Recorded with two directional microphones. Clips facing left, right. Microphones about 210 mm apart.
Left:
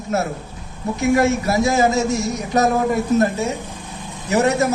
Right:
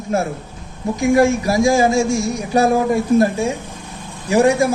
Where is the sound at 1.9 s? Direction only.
10° right (ahead or behind).